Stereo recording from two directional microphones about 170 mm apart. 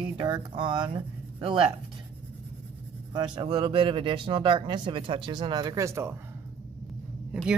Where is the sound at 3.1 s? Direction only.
25° right (ahead or behind).